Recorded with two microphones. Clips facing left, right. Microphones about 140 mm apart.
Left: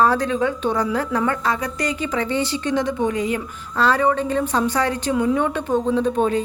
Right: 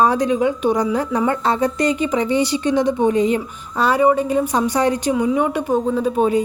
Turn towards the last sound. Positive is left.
turn(degrees=-5)  # may be behind; listen again after turning